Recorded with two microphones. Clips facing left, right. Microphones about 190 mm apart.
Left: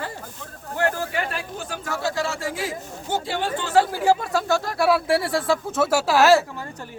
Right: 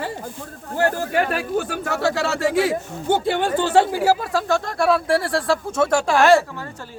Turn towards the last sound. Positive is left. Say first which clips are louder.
# right 1 dB
turn(degrees=5)  # may be behind; listen again after turning